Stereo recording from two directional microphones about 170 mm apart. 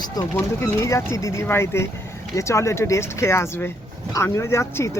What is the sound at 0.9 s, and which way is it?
Speech, 20° left (ahead or behind).